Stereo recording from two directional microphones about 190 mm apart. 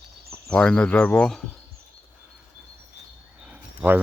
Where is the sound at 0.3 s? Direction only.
5° left (ahead or behind).